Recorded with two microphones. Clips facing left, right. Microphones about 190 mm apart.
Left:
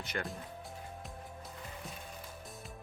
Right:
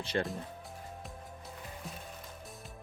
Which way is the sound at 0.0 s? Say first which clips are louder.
Right 6 dB; 30° right (ahead or behind).